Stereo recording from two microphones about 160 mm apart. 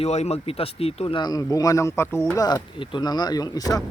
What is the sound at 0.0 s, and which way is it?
Speech, 40° left (ahead or behind).